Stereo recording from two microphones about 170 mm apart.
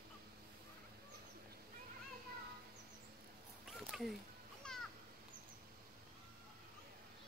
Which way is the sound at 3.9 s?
Centre (ahead or behind).